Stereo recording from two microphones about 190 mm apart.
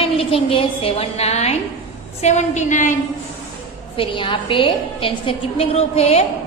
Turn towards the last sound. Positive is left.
turn(degrees=35)  # may be behind; listen again after turning